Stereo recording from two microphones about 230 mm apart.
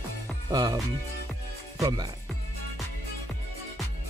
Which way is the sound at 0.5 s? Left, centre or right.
Centre.